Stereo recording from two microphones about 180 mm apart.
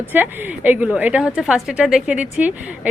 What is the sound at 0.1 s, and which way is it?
A woman's voice, 10° right (ahead or behind).